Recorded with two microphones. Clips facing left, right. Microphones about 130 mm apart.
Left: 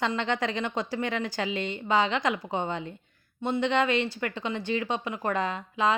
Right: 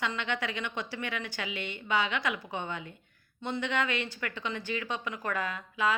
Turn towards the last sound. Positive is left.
turn(degrees=30)  # may be behind; listen again after turning